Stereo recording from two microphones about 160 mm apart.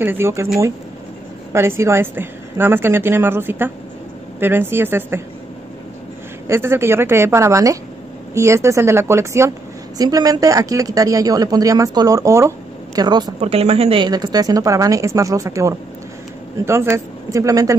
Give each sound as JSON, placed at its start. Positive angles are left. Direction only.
{"t": 0.0, "sound": "a woman's voice", "side_deg": -15}
{"t": 1.5, "sound": "a woman's voice", "side_deg": -15}
{"t": 6.4, "sound": "a woman's voice", "side_deg": -15}
{"t": 13.4, "sound": "speech", "side_deg": -40}